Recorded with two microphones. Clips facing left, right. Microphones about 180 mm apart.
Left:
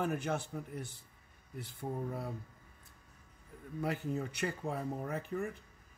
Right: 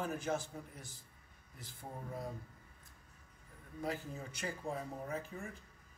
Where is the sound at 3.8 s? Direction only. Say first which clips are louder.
Left 5 dB; 65° left (ahead or behind).